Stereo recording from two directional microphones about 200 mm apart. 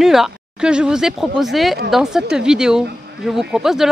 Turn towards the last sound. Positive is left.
turn(degrees=0)  # may be behind; listen again after turning